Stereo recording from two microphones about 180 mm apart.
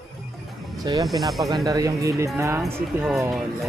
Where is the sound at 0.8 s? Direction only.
20° right (ahead or behind).